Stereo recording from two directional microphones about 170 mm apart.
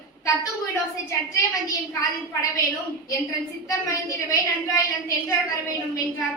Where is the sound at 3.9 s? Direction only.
20° left (ahead or behind).